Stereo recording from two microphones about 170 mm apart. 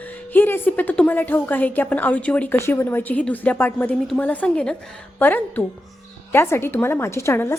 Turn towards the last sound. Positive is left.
turn(degrees=15)  # may be behind; listen again after turning